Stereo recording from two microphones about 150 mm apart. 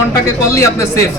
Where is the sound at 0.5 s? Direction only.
20° left (ahead or behind).